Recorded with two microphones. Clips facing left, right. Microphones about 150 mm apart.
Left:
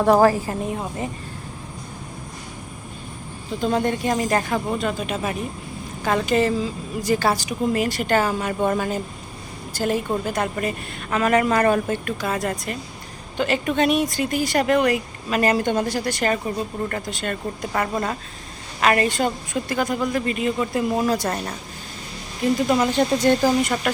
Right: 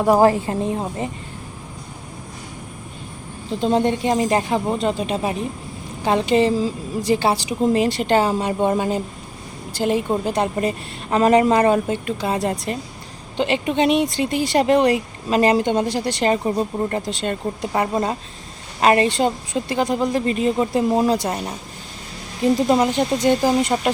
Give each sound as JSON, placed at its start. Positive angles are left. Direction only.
{"t": 0.0, "sound": "speech", "side_deg": -15}
{"t": 3.5, "sound": "a woman's voice", "side_deg": -25}
{"t": 21.2, "sound": "speech", "side_deg": -15}
{"t": 22.5, "sound": "speech", "side_deg": -30}
{"t": 22.9, "sound": "speech", "side_deg": -15}